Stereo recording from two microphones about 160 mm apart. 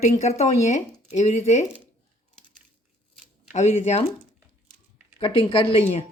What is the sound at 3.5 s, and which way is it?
Speech, 40° left (ahead or behind).